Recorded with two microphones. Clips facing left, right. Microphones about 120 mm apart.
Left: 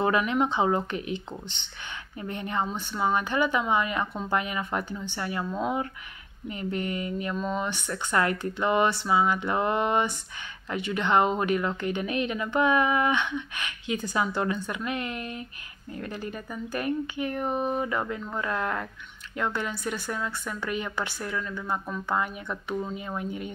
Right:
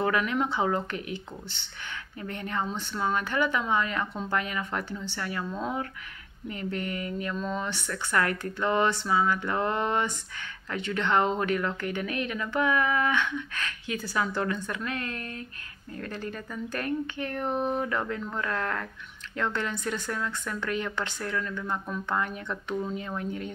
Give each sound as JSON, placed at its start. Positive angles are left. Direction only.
{"t": 0.0, "sound": "speech", "side_deg": 20}
{"t": 7.3, "sound": "speech", "side_deg": 10}